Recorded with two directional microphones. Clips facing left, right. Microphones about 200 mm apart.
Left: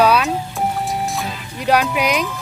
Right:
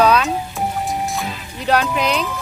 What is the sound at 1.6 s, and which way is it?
Speech, 5° left (ahead or behind).